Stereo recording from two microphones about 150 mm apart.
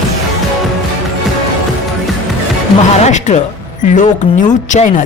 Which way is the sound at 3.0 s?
50° left (ahead or behind).